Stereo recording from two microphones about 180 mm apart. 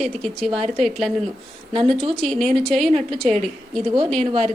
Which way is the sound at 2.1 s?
Centre (ahead or behind).